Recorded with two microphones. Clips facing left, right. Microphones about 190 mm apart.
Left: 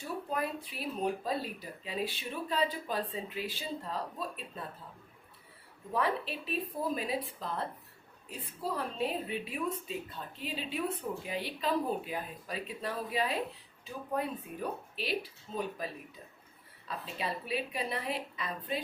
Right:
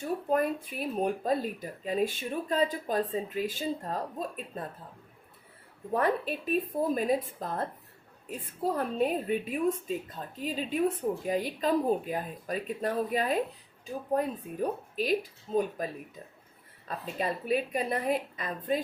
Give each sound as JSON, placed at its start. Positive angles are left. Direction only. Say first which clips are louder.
{"t": 0.0, "sound": "a woman's voice", "louder": "right 7 dB", "side_deg": -50}
{"t": 5.9, "sound": "a woman's voice", "louder": "right 5 dB", "side_deg": -50}
{"t": 17.2, "sound": "a woman's voice", "louder": "right 7 dB", "side_deg": -50}